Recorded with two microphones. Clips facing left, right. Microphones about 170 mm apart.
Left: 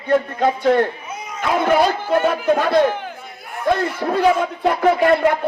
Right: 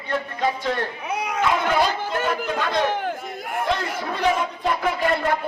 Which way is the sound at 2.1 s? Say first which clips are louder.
Left 8 dB; 60° left (ahead or behind).